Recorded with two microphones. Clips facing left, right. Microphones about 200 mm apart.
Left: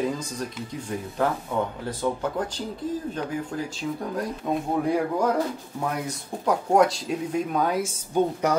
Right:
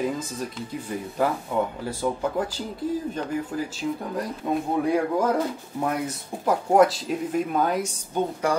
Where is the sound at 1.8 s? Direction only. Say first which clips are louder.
Right 1 dB; 10° right (ahead or behind).